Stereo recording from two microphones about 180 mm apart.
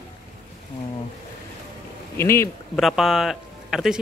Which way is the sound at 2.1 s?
15° left (ahead or behind).